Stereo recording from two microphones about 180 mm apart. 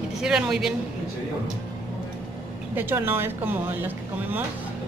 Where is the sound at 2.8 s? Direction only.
10° right (ahead or behind).